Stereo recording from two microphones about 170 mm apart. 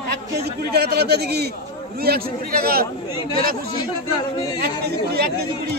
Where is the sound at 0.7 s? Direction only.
70° right (ahead or behind).